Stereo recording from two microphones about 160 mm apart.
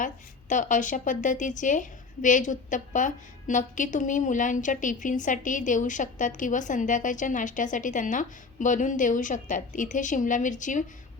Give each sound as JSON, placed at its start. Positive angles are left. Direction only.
{"t": 0.0, "sound": "a woman's voice", "side_deg": 55}